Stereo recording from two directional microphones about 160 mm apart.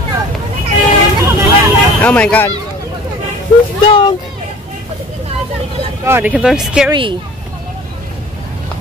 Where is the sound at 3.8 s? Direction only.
30° left (ahead or behind).